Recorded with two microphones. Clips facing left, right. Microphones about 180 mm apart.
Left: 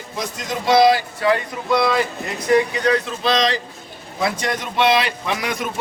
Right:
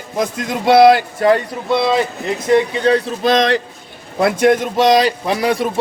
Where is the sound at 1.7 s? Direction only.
25° right (ahead or behind).